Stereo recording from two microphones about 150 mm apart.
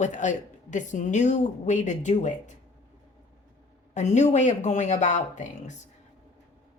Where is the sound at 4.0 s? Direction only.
50° left (ahead or behind).